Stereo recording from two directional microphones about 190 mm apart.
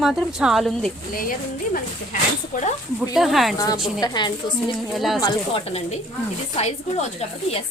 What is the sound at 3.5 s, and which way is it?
A woman's voice, 20° left (ahead or behind).